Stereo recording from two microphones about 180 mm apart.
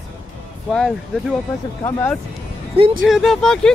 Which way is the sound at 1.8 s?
15° left (ahead or behind).